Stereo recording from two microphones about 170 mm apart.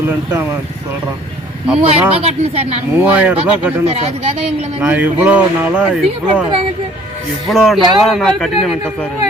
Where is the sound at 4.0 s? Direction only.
40° right (ahead or behind).